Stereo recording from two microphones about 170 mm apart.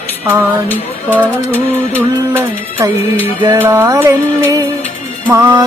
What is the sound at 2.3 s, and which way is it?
Music, 15° right (ahead or behind).